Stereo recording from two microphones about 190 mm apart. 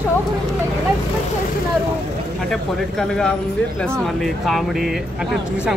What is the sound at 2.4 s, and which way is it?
Speech, 5° left (ahead or behind).